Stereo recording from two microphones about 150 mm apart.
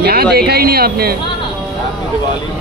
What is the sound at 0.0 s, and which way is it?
Speech, 90° right.